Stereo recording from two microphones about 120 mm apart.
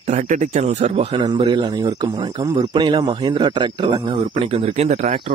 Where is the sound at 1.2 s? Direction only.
40° right (ahead or behind).